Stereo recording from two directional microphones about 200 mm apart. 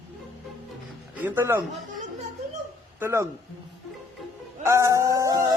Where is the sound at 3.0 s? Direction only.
15° right (ahead or behind).